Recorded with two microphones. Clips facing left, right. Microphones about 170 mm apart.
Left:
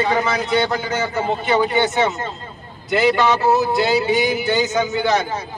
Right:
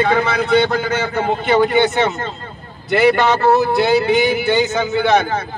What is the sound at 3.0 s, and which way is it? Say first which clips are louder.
A man's voice: right 3 dB; 55° right (ahead or behind).